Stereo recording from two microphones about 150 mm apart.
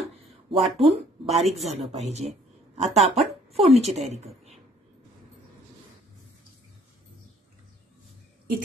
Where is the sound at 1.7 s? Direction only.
45° right (ahead or behind).